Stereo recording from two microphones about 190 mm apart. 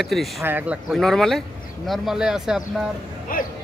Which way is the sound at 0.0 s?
Centre (ahead or behind).